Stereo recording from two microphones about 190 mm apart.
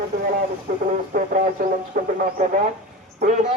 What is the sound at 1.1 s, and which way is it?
Speech, 45° right (ahead or behind).